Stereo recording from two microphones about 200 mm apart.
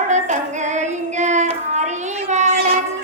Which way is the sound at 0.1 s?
35° right (ahead or behind).